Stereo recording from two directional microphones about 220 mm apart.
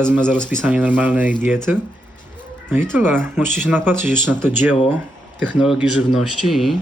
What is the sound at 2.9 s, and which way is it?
Speech, 10° right (ahead or behind).